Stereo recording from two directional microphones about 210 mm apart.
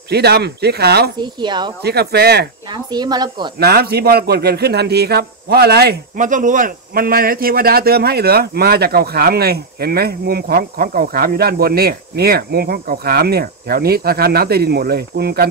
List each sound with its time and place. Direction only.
0.1 s a man's voice: 50° right (ahead or behind)
1.1 s speech: 20° right (ahead or behind)
1.8 s a man's voice: 50° right (ahead or behind)
2.7 s speech: 20° right (ahead or behind)
3.5 s a man's voice: 50° right (ahead or behind)